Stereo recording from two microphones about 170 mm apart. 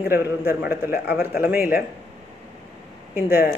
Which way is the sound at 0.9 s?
60° left (ahead or behind).